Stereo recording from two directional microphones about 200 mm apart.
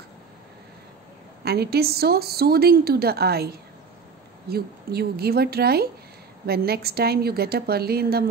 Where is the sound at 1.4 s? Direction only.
55° right (ahead or behind).